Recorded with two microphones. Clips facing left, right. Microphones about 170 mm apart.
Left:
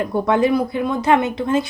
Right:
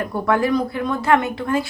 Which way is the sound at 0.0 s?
20° left (ahead or behind).